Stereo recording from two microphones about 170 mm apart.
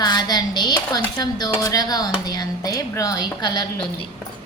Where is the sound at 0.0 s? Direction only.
25° left (ahead or behind).